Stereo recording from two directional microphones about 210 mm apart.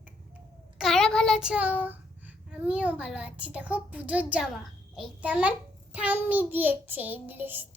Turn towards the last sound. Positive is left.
turn(degrees=-10)  # may be behind; listen again after turning